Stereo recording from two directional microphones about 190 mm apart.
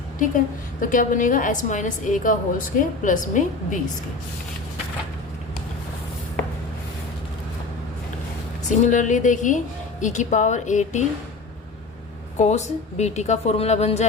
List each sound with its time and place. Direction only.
0.2 s a woman's voice: 45° left (ahead or behind)
8.7 s a woman's voice: 40° left (ahead or behind)
12.4 s a woman's voice: 35° left (ahead or behind)